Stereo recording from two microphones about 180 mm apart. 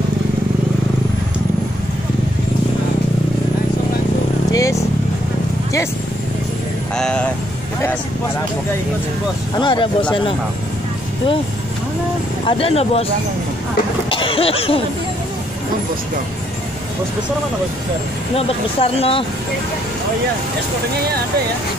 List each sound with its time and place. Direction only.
4.5 s vehicle: 20° left (ahead or behind)
7.0 s speech: 5° left (ahead or behind)
9.6 s speech: 25° left (ahead or behind)
12.4 s speech: 30° left (ahead or behind)
14.1 s speech: 30° left (ahead or behind)
18.3 s speech: 30° left (ahead or behind)